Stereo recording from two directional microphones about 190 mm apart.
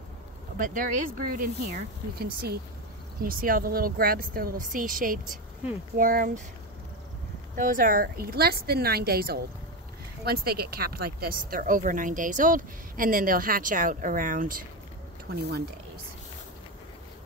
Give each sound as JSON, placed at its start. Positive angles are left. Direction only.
{"t": 0.6, "sound": "speech", "side_deg": -45}
{"t": 7.5, "sound": "speech", "side_deg": -45}